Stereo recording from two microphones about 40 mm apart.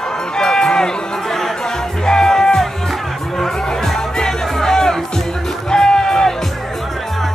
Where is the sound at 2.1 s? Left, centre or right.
Centre.